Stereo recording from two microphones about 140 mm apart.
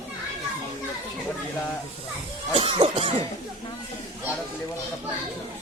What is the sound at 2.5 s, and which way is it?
Cough, 45° right (ahead or behind).